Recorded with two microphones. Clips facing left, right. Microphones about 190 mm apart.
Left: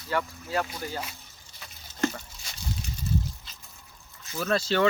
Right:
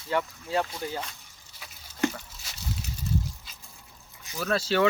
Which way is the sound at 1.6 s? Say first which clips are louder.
Even; 10° right (ahead or behind).